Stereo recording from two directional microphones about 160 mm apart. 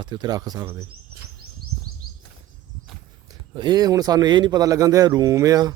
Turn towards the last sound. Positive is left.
turn(degrees=-20)  # may be behind; listen again after turning